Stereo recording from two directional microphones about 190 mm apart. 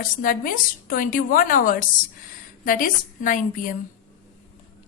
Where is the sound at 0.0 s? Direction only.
45° left (ahead or behind).